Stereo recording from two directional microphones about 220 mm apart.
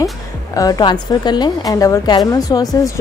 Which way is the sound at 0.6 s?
15° left (ahead or behind).